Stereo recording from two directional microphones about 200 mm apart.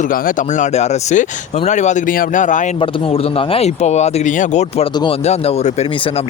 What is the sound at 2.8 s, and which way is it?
Speech, 25° left (ahead or behind).